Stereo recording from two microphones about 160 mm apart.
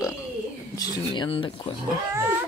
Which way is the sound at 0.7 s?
25° left (ahead or behind).